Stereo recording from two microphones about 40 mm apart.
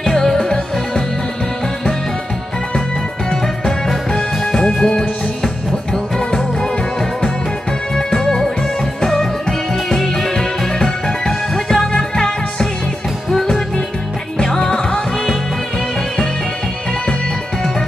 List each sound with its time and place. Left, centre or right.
0.0 s music: centre
3.3 s music: centre
7.9 s music: centre